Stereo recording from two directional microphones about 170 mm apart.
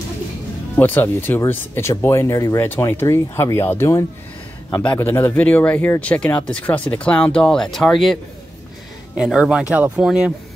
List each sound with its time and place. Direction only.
0.7 s speech: 10° left (ahead or behind); by 10.3 s 5° right (ahead or behind)